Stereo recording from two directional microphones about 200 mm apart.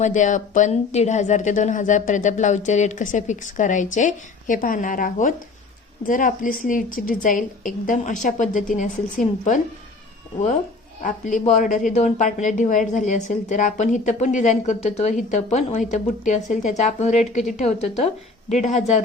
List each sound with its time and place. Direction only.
0.0 s a woman's voice: 40° left (ahead or behind)
11.0 s a woman's voice: 40° left (ahead or behind)